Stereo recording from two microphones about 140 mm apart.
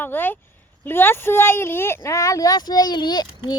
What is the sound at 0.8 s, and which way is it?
A child's voice, 15° left (ahead or behind).